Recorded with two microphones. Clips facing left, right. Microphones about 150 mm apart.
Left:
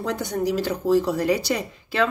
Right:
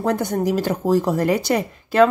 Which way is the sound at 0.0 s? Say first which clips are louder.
Right 4 dB; 50° right (ahead or behind).